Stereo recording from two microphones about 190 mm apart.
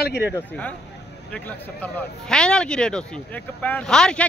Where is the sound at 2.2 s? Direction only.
5° left (ahead or behind).